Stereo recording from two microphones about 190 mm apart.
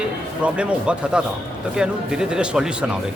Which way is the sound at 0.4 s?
5° right (ahead or behind).